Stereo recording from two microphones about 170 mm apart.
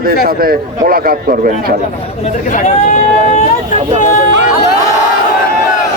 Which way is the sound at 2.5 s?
45° left (ahead or behind).